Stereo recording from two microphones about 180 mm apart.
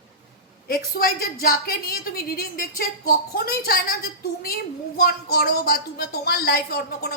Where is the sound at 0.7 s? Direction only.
55° left (ahead or behind).